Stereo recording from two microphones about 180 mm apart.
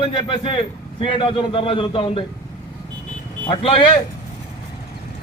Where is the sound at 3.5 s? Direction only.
30° left (ahead or behind).